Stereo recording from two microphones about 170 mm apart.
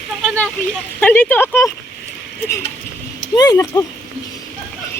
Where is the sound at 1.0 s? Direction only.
10° left (ahead or behind).